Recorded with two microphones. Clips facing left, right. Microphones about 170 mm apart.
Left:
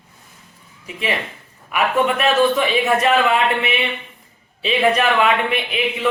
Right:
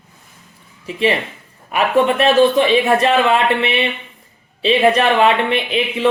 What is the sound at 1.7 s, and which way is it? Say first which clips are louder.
A man's voice: right 3 dB; 30° right (ahead or behind).